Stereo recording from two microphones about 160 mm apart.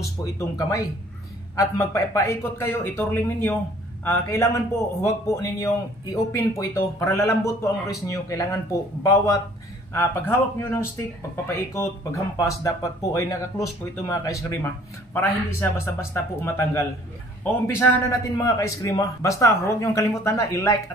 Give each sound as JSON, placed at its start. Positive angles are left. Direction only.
{"t": 0.6, "sound": "a man's voice", "side_deg": 20}